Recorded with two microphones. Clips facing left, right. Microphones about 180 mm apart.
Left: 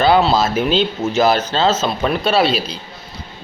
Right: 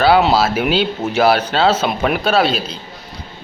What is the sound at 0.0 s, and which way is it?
A man's voice, 10° right (ahead or behind).